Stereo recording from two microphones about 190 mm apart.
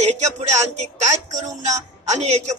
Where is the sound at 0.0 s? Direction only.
35° right (ahead or behind).